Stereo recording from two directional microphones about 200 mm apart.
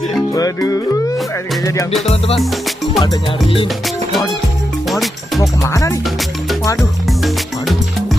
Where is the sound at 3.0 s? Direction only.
20° left (ahead or behind).